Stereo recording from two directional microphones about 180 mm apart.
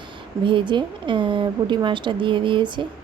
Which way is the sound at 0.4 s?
25° right (ahead or behind).